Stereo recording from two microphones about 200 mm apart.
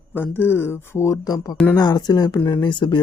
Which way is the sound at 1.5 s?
5° left (ahead or behind).